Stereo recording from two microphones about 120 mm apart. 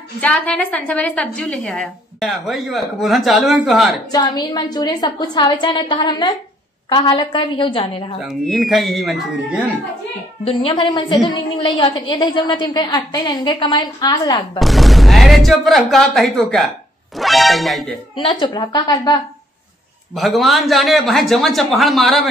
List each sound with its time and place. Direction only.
0.2 s a woman's voice: 10° left (ahead or behind)
4.1 s a woman's voice: 35° left (ahead or behind)
8.2 s a woman's voice: centre (ahead or behind)
10.4 s a woman's voice: 50° left (ahead or behind); by 14.6 s 30° left (ahead or behind)
14.6 s a woman's voice: centre (ahead or behind)
18.1 s a woman's voice: 40° left (ahead or behind)
20.2 s a woman's voice: centre (ahead or behind)